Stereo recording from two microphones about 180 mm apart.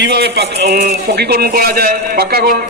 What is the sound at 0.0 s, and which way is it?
A man's voice, 70° right (ahead or behind).